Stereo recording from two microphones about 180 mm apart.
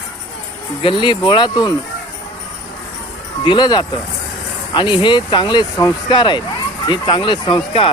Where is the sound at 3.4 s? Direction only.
25° left (ahead or behind).